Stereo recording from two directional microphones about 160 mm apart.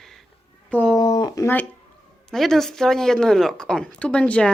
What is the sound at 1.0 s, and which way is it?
Speech, 25° left (ahead or behind).